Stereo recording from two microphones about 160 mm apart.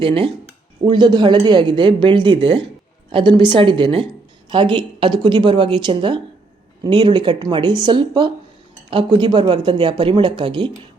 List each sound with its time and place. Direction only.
0.0 s a woman's voice: 35° right (ahead or behind)